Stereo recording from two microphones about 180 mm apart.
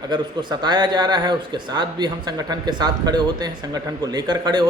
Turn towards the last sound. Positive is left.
turn(degrees=-25)  # may be behind; listen again after turning